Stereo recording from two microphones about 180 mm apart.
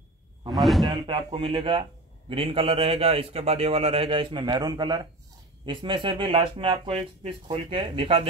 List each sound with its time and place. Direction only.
0.5 s speech: centre (ahead or behind)
0.8 s a man's voice: 25° right (ahead or behind)